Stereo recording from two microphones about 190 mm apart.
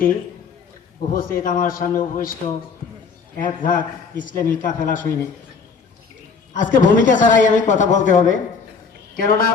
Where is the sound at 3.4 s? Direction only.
45° left (ahead or behind).